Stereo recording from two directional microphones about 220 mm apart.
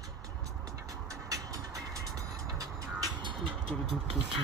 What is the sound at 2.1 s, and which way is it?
Music, 15° right (ahead or behind).